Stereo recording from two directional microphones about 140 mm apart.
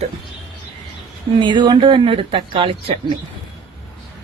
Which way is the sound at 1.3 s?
35° right (ahead or behind).